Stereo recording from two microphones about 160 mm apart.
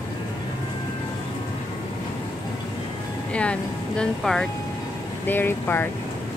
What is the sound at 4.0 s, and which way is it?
Speech, 5° left (ahead or behind).